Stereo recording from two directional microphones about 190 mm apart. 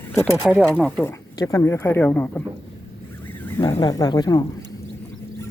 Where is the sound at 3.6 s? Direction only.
20° left (ahead or behind).